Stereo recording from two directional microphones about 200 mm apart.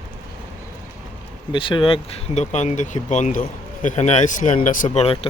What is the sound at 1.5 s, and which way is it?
Speech, 25° left (ahead or behind).